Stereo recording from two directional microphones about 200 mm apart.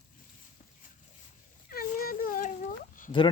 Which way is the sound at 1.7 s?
45° left (ahead or behind).